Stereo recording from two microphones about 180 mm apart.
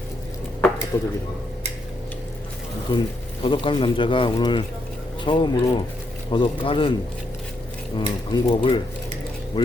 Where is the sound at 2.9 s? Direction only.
25° left (ahead or behind).